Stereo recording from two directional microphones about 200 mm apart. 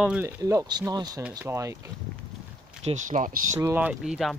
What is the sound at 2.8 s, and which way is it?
Speech, 40° right (ahead or behind).